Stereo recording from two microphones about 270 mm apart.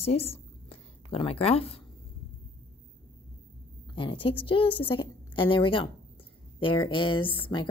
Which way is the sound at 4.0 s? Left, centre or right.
Centre.